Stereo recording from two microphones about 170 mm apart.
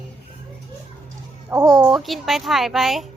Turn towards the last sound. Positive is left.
turn(degrees=0)  # may be behind; listen again after turning